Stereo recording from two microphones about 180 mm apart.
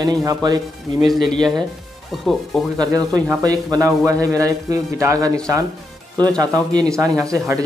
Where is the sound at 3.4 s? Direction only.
20° right (ahead or behind).